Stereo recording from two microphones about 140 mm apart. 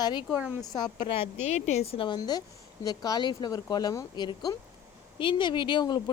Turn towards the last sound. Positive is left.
turn(degrees=35)  # may be behind; listen again after turning